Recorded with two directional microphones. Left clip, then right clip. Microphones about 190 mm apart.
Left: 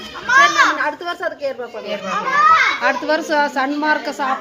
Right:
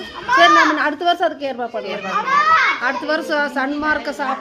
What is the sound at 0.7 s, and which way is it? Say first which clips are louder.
Speech: right 4 dB; 60° right (ahead or behind).